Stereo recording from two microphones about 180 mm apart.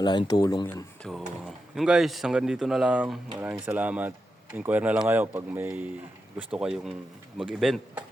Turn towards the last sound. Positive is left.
turn(degrees=0)  # may be behind; listen again after turning